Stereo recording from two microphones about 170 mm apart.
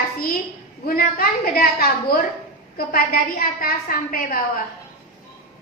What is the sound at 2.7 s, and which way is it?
A woman's voice, 60° left (ahead or behind).